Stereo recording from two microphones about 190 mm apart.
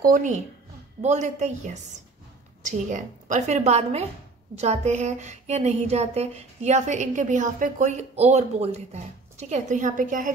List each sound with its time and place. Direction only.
0.0 s speech: 45° right (ahead or behind)